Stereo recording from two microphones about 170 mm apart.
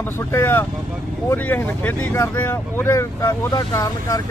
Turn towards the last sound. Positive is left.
turn(degrees=20)  # may be behind; listen again after turning